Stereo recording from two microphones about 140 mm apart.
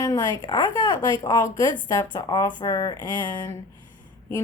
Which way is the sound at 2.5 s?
25° left (ahead or behind).